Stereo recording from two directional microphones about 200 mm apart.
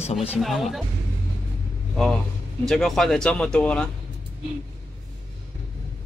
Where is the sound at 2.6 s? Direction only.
Centre (ahead or behind).